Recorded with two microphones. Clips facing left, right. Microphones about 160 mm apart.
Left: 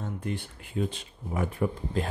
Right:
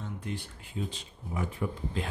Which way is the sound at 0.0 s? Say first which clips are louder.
Left 4 dB; 55° left (ahead or behind).